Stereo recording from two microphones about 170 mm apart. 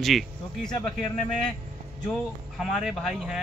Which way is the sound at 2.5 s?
Centre (ahead or behind).